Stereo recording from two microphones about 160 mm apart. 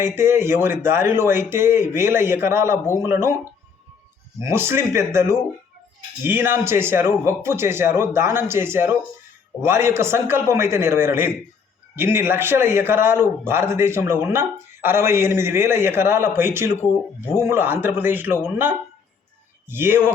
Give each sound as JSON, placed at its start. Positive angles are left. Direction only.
{"t": 0.2, "sound": "a man's voice", "side_deg": -15}
{"t": 4.4, "sound": "a man's voice", "side_deg": -15}